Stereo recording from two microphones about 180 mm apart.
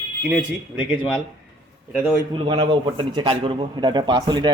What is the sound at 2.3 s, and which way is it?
Speech, 30° right (ahead or behind).